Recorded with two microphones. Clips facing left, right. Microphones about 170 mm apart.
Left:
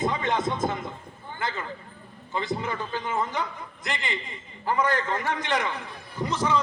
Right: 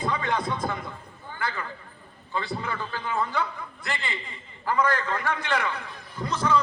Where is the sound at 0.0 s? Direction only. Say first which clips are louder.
Left 2 dB; 20° left (ahead or behind).